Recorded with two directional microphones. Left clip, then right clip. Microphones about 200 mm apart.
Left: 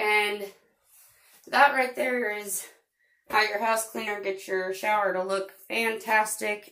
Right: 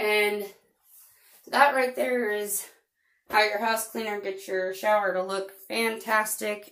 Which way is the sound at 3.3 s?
15° right (ahead or behind).